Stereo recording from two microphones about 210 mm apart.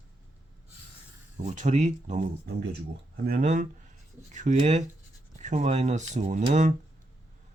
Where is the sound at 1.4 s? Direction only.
35° right (ahead or behind).